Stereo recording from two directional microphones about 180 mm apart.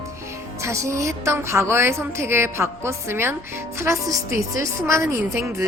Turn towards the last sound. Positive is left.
turn(degrees=-15)  # may be behind; listen again after turning